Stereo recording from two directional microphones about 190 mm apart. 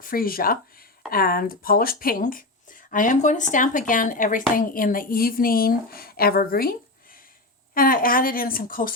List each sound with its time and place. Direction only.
0.0 s speech: 50° left (ahead or behind)